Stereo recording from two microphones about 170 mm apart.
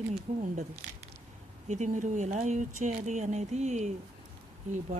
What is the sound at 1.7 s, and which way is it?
Speech, 45° right (ahead or behind).